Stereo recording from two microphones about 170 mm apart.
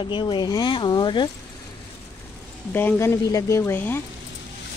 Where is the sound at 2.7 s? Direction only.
10° left (ahead or behind).